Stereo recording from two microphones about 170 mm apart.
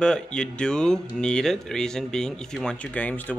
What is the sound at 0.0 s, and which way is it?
Speech, 5° left (ahead or behind).